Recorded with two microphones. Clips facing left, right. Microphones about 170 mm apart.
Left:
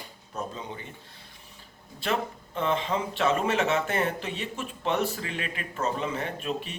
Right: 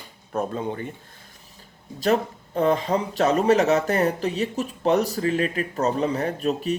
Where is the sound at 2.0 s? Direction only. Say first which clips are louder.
Right 7 dB; 40° right (ahead or behind).